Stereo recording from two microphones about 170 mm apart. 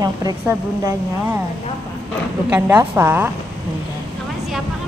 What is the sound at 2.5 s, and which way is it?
Speech, 15° right (ahead or behind).